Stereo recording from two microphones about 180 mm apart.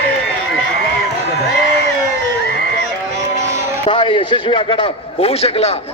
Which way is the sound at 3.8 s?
25° left (ahead or behind).